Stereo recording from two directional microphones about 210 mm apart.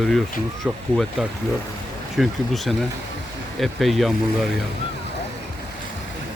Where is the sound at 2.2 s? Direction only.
Centre (ahead or behind).